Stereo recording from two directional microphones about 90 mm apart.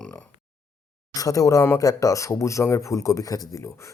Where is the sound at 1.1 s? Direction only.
40° left (ahead or behind).